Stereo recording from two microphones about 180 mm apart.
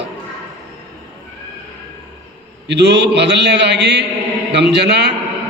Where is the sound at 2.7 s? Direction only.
70° right (ahead or behind).